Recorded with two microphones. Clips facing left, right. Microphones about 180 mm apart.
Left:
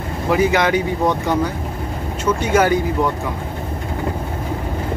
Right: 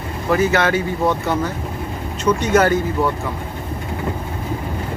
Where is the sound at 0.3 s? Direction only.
15° left (ahead or behind).